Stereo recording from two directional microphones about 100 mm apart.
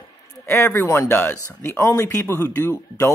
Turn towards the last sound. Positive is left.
turn(degrees=30)  # may be behind; listen again after turning